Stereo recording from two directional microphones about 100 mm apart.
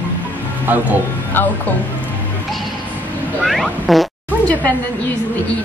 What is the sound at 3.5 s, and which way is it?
Fart, centre (ahead or behind).